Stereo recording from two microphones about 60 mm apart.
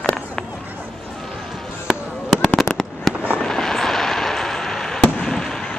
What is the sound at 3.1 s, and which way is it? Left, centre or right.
Fireworks, centre.